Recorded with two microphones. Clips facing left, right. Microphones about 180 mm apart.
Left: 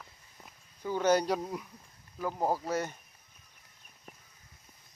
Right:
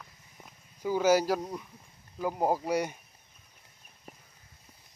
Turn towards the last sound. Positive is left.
turn(degrees=-5)  # may be behind; listen again after turning